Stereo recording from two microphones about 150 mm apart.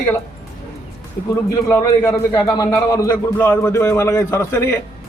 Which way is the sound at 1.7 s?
15° left (ahead or behind).